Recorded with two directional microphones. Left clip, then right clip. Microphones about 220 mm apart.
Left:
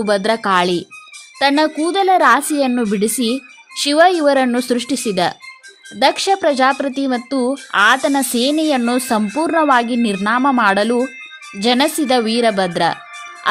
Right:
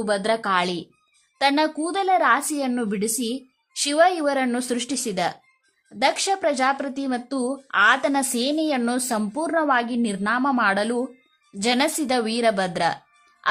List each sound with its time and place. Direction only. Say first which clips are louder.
0.0 s speech: left 6 dB; 20° left (ahead or behind)